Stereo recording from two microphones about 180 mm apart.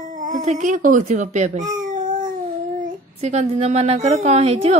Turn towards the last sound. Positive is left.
turn(degrees=-35)  # may be behind; listen again after turning